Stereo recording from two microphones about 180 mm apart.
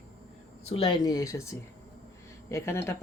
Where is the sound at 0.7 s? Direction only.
25° left (ahead or behind).